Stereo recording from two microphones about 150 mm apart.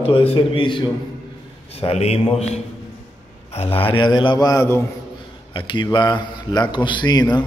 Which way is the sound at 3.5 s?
40° left (ahead or behind).